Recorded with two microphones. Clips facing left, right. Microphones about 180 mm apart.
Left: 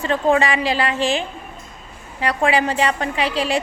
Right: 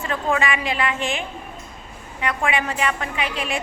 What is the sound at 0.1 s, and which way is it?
A woman's voice, 30° left (ahead or behind).